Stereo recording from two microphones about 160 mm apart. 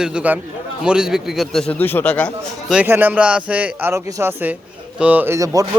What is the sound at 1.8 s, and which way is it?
Speech, 10° left (ahead or behind).